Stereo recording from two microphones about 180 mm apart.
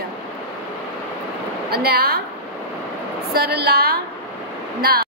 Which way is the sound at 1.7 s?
60° right (ahead or behind).